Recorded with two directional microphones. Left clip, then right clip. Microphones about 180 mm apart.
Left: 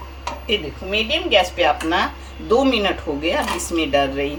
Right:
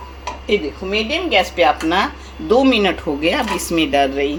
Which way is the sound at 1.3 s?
35° right (ahead or behind).